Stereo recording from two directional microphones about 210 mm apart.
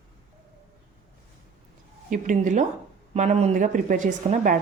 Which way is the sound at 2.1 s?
40° right (ahead or behind).